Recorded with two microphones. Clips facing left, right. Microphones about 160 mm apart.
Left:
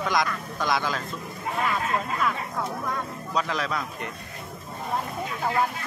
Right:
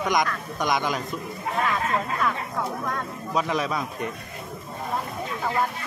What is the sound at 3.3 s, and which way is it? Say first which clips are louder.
Speech: right 3 dB; 20° right (ahead or behind).